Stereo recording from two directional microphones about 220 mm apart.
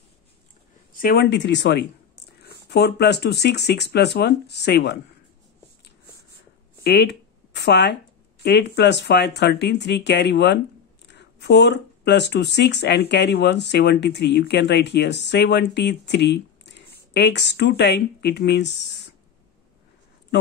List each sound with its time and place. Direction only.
0.9 s speech: 45° left (ahead or behind)
6.8 s a sound: 50° left (ahead or behind)
8.4 s speech: 50° left (ahead or behind)